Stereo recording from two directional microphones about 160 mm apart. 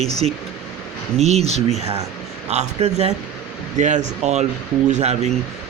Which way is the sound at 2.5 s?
45° right (ahead or behind).